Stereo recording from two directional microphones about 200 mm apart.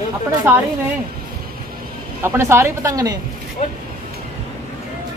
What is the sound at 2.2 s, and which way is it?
Speech, 15° right (ahead or behind).